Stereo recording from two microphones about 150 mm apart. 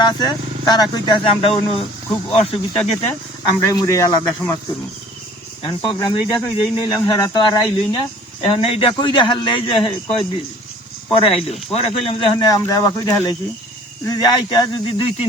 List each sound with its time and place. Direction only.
0.0 s speech: 25° left (ahead or behind); by 3.1 s 45° left (ahead or behind)
3.7 s speech: 25° left (ahead or behind)
5.6 s speech: 30° left (ahead or behind)
8.4 s speech: 40° left (ahead or behind)
12.4 s speech: 25° left (ahead or behind)